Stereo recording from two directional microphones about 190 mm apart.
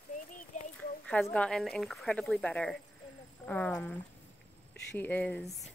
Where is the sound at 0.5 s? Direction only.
40° left (ahead or behind).